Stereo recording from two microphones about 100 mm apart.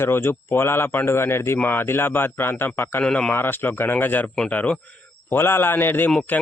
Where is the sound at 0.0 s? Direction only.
25° left (ahead or behind).